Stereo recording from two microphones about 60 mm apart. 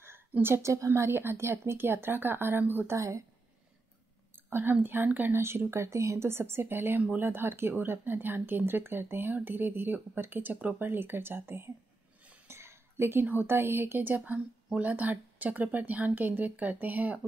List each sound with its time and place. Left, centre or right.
0.6 s speech: right
2.9 s a woman's voice: right
4.5 s speech: right
5.3 s speech: right